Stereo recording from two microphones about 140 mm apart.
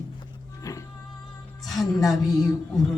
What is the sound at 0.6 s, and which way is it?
Music, 25° left (ahead or behind).